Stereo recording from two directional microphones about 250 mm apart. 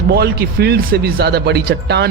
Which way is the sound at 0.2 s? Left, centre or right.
Right.